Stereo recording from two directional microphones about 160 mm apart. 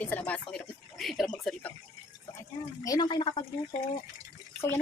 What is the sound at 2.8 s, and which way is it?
Speech, 25° left (ahead or behind).